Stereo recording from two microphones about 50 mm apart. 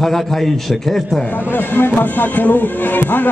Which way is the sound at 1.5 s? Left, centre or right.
Left.